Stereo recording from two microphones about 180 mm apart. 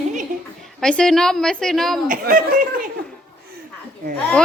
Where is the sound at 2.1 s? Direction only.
50° right (ahead or behind).